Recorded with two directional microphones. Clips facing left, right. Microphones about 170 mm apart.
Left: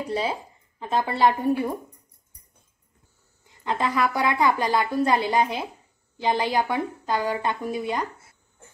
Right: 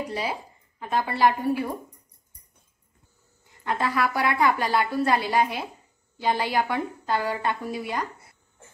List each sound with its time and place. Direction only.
0.1 s a woman's voice: 25° left (ahead or behind)
3.6 s a woman's voice: 20° left (ahead or behind)